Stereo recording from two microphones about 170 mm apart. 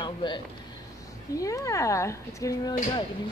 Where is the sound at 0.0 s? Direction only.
25° left (ahead or behind).